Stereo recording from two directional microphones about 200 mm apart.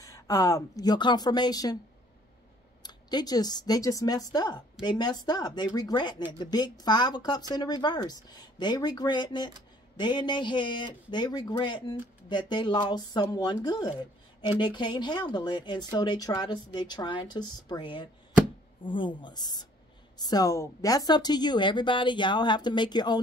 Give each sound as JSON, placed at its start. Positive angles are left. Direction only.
{"t": 0.0, "sound": "speech", "side_deg": 15}
{"t": 2.8, "sound": "speech", "side_deg": 20}